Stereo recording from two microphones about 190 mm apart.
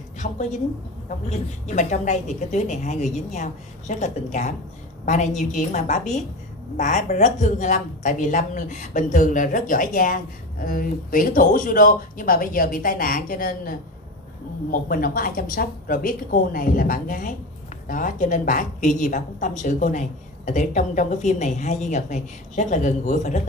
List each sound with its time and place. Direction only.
0.2 s a woman's voice: 40° left (ahead or behind)
1.7 s a woman's voice: 40° left (ahead or behind)